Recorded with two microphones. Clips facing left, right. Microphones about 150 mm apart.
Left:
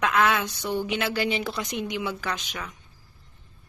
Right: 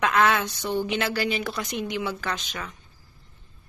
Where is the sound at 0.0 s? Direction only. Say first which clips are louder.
Right 1 dB; 5° left (ahead or behind).